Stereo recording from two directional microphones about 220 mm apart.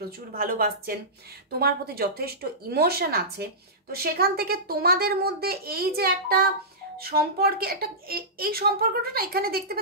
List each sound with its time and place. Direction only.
0.3 s a woman's voice: 40° right (ahead or behind)